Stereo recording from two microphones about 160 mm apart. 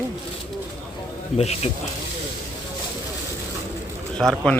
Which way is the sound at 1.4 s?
40° left (ahead or behind).